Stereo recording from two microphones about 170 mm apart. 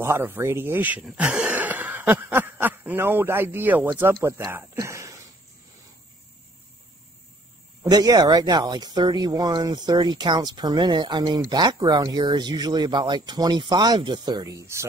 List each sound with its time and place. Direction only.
0.0 s speech: 15° right (ahead or behind)
7.8 s speech: 20° right (ahead or behind)